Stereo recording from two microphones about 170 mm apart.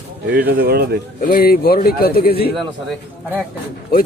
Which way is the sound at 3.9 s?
60° left (ahead or behind).